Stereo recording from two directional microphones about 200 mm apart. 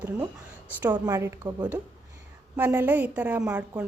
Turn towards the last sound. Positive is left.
turn(degrees=-5)  # may be behind; listen again after turning